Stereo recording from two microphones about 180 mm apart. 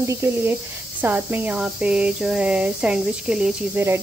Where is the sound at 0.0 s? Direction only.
15° right (ahead or behind).